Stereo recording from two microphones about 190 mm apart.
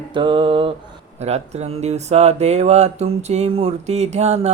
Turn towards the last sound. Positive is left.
turn(degrees=-35)  # may be behind; listen again after turning